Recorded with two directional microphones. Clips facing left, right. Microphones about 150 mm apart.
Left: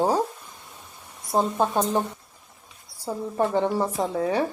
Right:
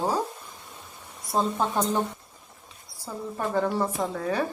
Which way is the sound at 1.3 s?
20° left (ahead or behind).